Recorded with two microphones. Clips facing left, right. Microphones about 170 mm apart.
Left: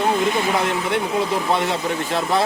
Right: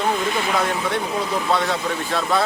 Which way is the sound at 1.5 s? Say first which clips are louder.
Left 1 dB; 20° left (ahead or behind).